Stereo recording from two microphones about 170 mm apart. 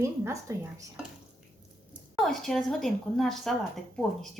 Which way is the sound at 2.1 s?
Centre (ahead or behind).